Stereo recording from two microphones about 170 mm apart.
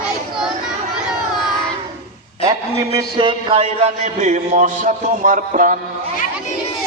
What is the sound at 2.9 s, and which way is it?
A man's voice, 30° right (ahead or behind).